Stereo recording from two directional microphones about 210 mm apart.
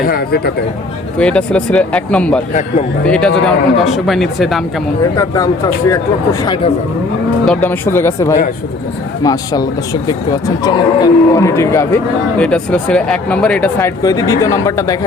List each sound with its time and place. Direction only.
0.0 s speech: 45° left (ahead or behind)
1.2 s speech: 5° left (ahead or behind)
2.5 s speech: 35° left (ahead or behind)
3.1 s speech: 5° left (ahead or behind)
5.1 s speech: 15° left (ahead or behind)
7.4 s speech: 5° left (ahead or behind)